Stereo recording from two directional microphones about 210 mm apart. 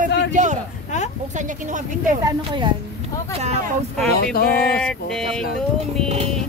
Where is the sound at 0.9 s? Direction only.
35° left (ahead or behind).